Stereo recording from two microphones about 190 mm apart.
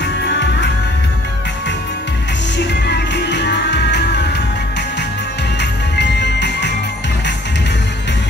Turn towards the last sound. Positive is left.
turn(degrees=65)  # may be behind; listen again after turning